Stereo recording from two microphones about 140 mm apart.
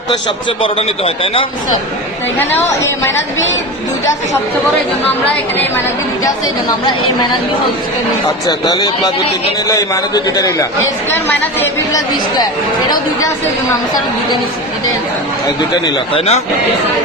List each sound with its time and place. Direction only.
0.1 s a man's voice: 35° left (ahead or behind)
2.4 s a woman's voice: 15° left (ahead or behind)
5.2 s a woman's voice: 15° left (ahead or behind)
8.4 s a man's voice: 30° left (ahead or behind)
11.1 s a woman's voice: 15° left (ahead or behind)
15.8 s a man's voice: 45° left (ahead or behind)